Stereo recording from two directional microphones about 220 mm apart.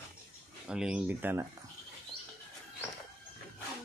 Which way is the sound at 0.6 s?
5° right (ahead or behind).